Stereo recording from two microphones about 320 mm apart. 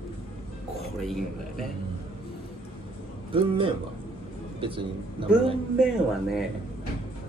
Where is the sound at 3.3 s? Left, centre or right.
Centre.